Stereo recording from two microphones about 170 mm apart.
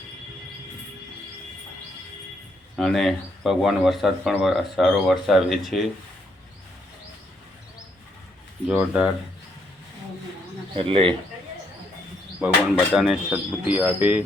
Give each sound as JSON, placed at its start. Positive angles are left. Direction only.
{"t": 2.7, "sound": "speech", "side_deg": 0}
{"t": 8.6, "sound": "speech", "side_deg": -5}
{"t": 10.8, "sound": "speech", "side_deg": -35}
{"t": 12.4, "sound": "speech", "side_deg": -5}